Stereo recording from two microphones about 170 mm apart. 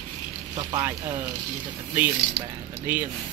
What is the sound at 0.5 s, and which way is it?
Speech, 15° right (ahead or behind).